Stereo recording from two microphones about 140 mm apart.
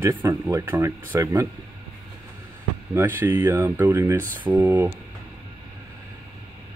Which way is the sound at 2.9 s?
15° right (ahead or behind).